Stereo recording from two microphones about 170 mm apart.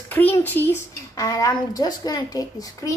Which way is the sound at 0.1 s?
10° left (ahead or behind).